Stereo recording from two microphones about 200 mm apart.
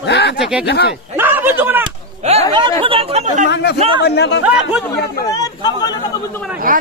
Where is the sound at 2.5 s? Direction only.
25° right (ahead or behind).